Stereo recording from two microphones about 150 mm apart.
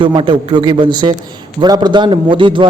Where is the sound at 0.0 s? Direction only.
35° right (ahead or behind).